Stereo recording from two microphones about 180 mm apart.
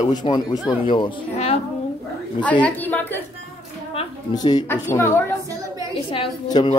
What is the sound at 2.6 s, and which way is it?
Speech, 10° left (ahead or behind).